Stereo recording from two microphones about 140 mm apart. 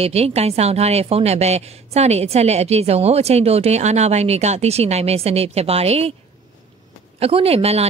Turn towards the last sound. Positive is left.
turn(degrees=-45)  # may be behind; listen again after turning